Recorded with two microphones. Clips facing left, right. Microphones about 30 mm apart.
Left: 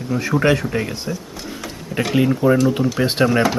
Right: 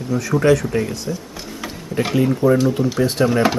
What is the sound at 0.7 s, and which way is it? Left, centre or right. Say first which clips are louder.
Speech: right 1 dB; left.